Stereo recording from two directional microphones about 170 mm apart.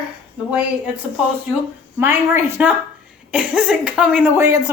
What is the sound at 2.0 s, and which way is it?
Speech, 15° right (ahead or behind).